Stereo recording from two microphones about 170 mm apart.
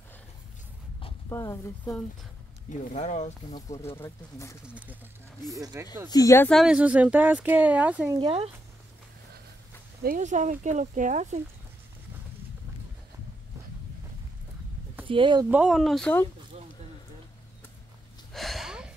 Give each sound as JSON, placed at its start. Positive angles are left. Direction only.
{"t": 1.3, "sound": "speech", "side_deg": 15}
{"t": 2.7, "sound": "speech", "side_deg": 45}
{"t": 4.0, "sound": "speech", "side_deg": 15}
{"t": 5.5, "sound": "speech", "side_deg": -20}
{"t": 6.0, "sound": "speech", "side_deg": 20}
{"t": 6.5, "sound": "speech", "side_deg": -5}
{"t": 8.1, "sound": "speech", "side_deg": -30}
{"t": 10.0, "sound": "speech", "side_deg": -45}
{"t": 15.0, "sound": "speech", "side_deg": -30}
{"t": 15.4, "sound": "speech", "side_deg": -5}
{"t": 18.3, "sound": "a sound", "side_deg": 0}